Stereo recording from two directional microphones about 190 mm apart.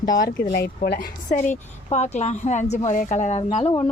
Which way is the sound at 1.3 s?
35° left (ahead or behind).